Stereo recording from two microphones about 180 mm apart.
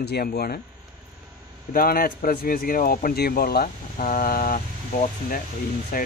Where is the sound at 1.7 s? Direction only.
55° left (ahead or behind).